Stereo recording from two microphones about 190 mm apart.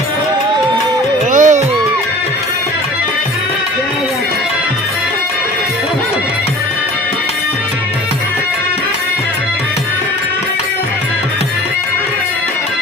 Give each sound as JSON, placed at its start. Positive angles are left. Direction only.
{"t": 1.3, "sound": "music", "side_deg": -40}